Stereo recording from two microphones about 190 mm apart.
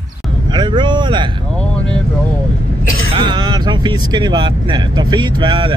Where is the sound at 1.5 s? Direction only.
5° left (ahead or behind).